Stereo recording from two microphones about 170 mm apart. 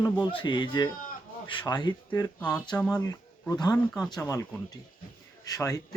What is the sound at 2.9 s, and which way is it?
Speech, 20° left (ahead or behind).